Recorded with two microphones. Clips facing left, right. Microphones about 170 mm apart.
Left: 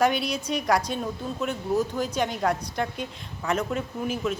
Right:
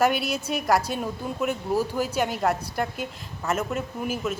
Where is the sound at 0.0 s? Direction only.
5° right (ahead or behind).